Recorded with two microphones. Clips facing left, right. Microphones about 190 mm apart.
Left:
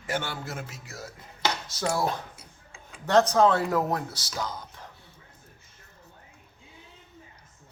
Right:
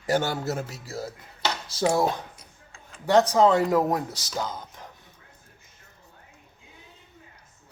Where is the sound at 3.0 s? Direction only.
10° right (ahead or behind).